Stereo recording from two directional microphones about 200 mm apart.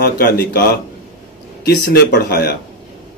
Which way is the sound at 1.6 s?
55° left (ahead or behind).